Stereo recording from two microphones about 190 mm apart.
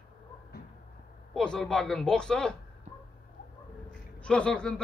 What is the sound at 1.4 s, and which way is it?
Speech, 5° left (ahead or behind).